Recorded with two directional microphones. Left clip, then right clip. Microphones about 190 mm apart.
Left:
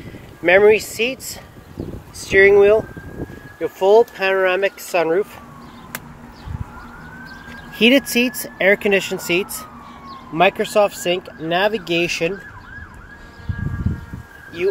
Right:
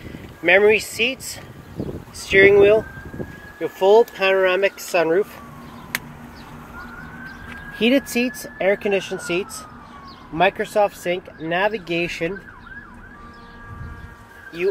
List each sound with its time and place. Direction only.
0.4 s speech: 15° left (ahead or behind)
3.5 s speech: 5° right (ahead or behind)
7.7 s speech: 30° left (ahead or behind)